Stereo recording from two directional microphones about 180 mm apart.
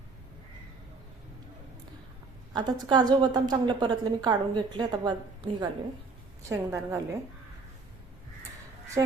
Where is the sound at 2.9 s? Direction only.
25° right (ahead or behind).